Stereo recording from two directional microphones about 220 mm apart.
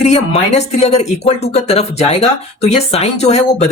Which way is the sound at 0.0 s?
30° left (ahead or behind).